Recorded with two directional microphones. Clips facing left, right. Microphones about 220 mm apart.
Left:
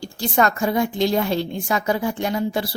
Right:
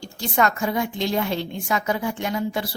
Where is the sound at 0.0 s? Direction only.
35° left (ahead or behind).